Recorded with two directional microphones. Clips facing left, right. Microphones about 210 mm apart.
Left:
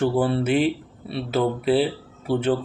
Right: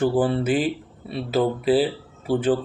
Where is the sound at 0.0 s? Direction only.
20° right (ahead or behind).